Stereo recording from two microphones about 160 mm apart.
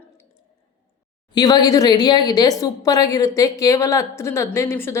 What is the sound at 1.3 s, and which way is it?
Speech, 25° left (ahead or behind).